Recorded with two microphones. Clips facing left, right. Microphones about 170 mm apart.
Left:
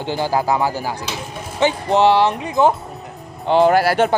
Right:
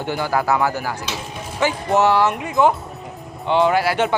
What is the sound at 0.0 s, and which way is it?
A man's voice, 30° left (ahead or behind).